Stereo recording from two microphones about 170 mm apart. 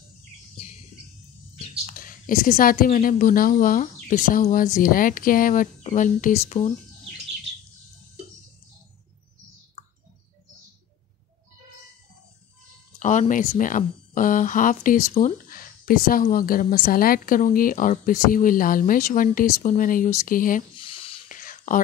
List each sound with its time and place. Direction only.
1.9 s speech: 55° left (ahead or behind)
13.0 s speech: 45° left (ahead or behind)
20.7 s a sound: 30° left (ahead or behind)
21.3 s whispering: 55° left (ahead or behind)